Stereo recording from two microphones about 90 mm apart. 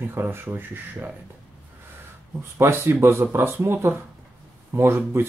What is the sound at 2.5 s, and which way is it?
Speech, 25° right (ahead or behind).